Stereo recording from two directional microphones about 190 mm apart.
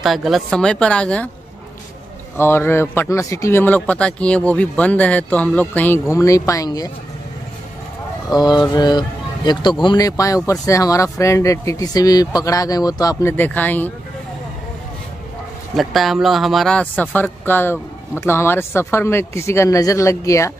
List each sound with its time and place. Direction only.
0.0 s a woman's voice: centre (ahead or behind)
2.3 s speech: 10° left (ahead or behind)
8.3 s speech: 20° left (ahead or behind)
15.7 s speech: centre (ahead or behind); by 20.5 s 15° left (ahead or behind)